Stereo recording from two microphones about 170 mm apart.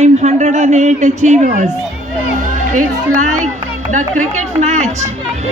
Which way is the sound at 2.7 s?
50° right (ahead or behind).